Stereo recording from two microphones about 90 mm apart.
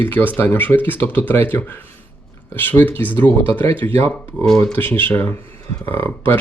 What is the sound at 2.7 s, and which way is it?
Speech, 25° left (ahead or behind).